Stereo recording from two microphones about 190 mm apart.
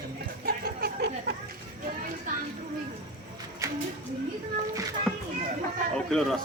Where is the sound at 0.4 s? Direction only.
55° right (ahead or behind).